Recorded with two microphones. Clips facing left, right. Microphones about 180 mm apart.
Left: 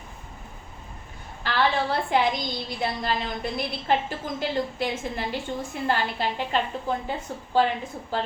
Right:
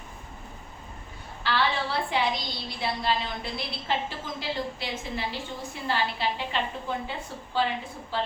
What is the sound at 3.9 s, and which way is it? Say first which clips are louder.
A woman's voice: left 5 dB; 50° left (ahead or behind).